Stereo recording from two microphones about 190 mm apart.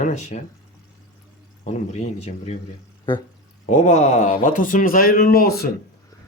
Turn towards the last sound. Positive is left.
turn(degrees=50)  # may be behind; listen again after turning